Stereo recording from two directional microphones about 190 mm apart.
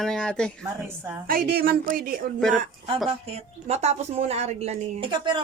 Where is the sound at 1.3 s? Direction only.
55° right (ahead or behind).